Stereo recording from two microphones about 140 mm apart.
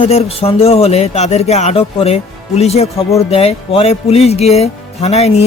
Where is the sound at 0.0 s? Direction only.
45° left (ahead or behind).